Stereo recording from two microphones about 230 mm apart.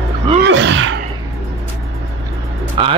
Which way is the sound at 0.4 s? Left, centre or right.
Right.